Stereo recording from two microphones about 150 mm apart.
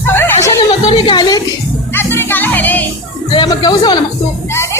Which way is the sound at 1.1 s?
25° left (ahead or behind).